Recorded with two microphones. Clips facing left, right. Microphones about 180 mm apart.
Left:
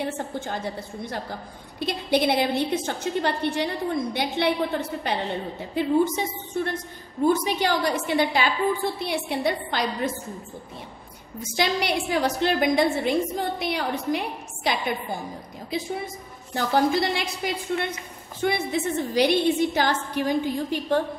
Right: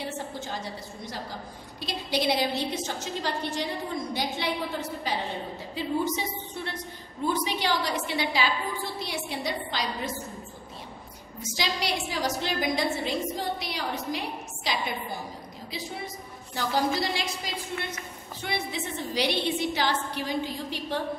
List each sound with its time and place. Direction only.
0.0 s a woman's voice: 55° left (ahead or behind)
5.8 s a woman's voice: 50° left (ahead or behind)
11.5 s a woman's voice: 55° left (ahead or behind)
16.5 s a woman's voice: 60° left (ahead or behind)